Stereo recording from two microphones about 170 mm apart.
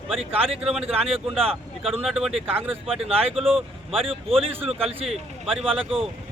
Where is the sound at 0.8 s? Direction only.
35° right (ahead or behind).